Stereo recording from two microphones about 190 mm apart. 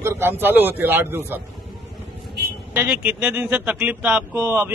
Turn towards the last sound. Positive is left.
turn(degrees=-10)  # may be behind; listen again after turning